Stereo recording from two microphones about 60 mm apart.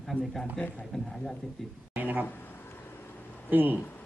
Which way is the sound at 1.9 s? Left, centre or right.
Right.